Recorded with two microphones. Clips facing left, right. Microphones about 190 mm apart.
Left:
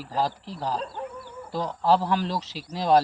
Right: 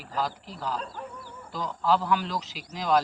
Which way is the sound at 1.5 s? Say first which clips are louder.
Left 3 dB; 40° left (ahead or behind).